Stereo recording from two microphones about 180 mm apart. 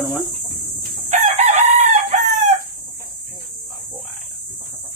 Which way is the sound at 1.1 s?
40° right (ahead or behind).